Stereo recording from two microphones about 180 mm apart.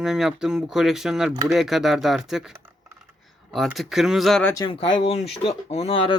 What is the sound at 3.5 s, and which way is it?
Speech, centre (ahead or behind).